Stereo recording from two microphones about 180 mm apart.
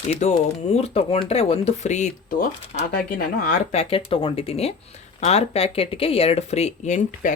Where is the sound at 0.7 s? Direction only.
35° left (ahead or behind).